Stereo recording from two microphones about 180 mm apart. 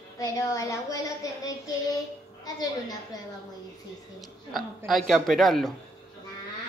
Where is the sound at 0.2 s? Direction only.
20° left (ahead or behind).